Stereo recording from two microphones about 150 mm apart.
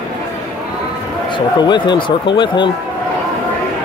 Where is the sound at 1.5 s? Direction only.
30° left (ahead or behind).